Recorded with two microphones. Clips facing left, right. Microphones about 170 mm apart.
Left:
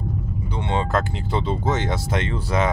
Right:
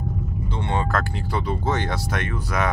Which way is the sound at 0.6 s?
20° left (ahead or behind).